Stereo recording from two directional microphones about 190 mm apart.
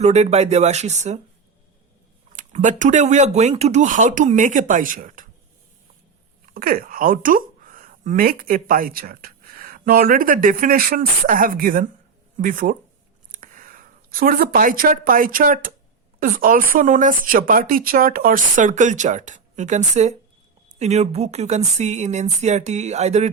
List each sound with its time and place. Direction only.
0.0 s speech: 35° right (ahead or behind)
2.3 s speech: 40° right (ahead or behind)
6.5 s speech: 50° right (ahead or behind)